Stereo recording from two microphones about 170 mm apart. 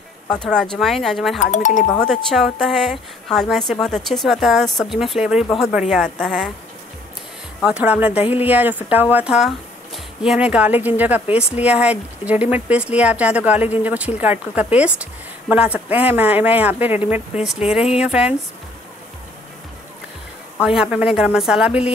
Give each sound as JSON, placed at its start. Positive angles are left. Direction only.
{"t": 0.3, "sound": "a woman's voice", "side_deg": 5}
{"t": 1.4, "sound": "speech", "side_deg": 45}
{"t": 2.0, "sound": "a woman's voice", "side_deg": 0}
{"t": 7.6, "sound": "a woman's voice", "side_deg": -5}
{"t": 20.6, "sound": "a woman's voice", "side_deg": -5}